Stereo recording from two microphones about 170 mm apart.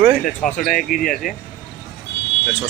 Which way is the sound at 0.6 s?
55° left (ahead or behind).